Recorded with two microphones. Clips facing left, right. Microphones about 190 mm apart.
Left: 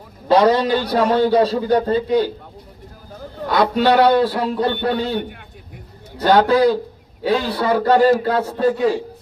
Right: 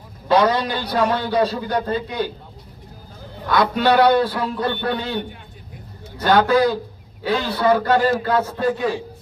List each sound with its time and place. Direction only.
0.3 s a man's voice: 35° left (ahead or behind)
3.5 s a man's voice: 30° left (ahead or behind)
6.1 s a man's voice: 30° left (ahead or behind)